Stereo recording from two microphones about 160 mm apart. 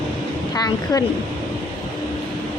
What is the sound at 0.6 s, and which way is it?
Speech, 25° left (ahead or behind).